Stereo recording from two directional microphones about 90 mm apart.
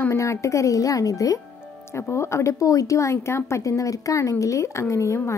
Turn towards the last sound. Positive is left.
turn(degrees=30)  # may be behind; listen again after turning